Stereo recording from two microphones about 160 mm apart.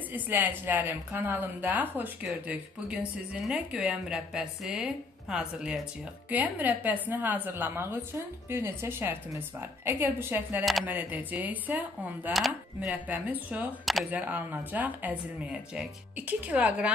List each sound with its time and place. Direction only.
0.1 s a woman's voice: 10° right (ahead or behind)
10.6 s speech: centre (ahead or behind)
10.9 s a woman's voice: 10° right (ahead or behind)
14.2 s a woman's voice: 10° right (ahead or behind)